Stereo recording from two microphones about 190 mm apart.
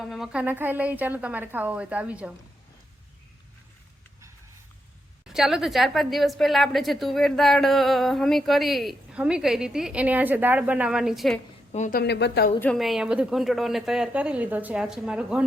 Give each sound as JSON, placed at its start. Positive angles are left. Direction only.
{"t": 0.0, "sound": "a woman's voice", "side_deg": 0}
{"t": 5.3, "sound": "a woman's voice", "side_deg": 0}
{"t": 11.7, "sound": "a woman's voice", "side_deg": 40}
{"t": 11.9, "sound": "speech", "side_deg": 65}
{"t": 12.5, "sound": "a woman's voice", "side_deg": 5}